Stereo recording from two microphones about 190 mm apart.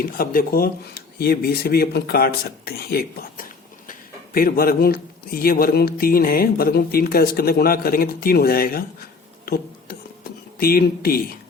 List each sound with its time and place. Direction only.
0.0 s a man's voice: 50° left (ahead or behind)
10.6 s a man's voice: 50° left (ahead or behind)